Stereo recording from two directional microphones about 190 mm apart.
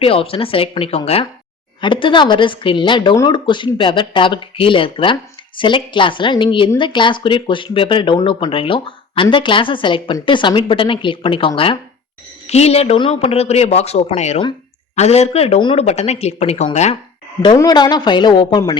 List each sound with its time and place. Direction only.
0.0 s speech: 30° left (ahead or behind)
17.4 s speech: 20° left (ahead or behind)